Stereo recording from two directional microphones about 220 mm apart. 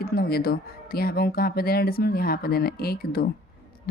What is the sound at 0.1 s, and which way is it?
A woman's voice, 45° left (ahead or behind).